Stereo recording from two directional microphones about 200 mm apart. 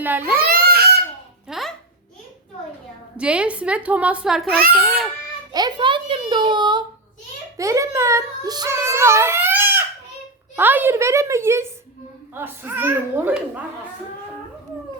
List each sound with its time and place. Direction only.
0.0 s a woman's voice: 10° right (ahead or behind)
0.3 s crying: 50° right (ahead or behind)
1.5 s a sound: centre (ahead or behind)
3.2 s a woman's voice: 5° right (ahead or behind)
4.4 s a child's voice: 50° right (ahead or behind)
5.5 s a child's voice: 20° right (ahead or behind)